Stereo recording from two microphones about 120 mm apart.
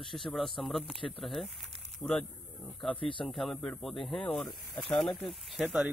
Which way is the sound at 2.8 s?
45° left (ahead or behind).